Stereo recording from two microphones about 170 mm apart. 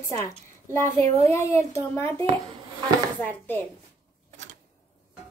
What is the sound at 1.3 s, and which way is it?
A child's voice, 15° left (ahead or behind).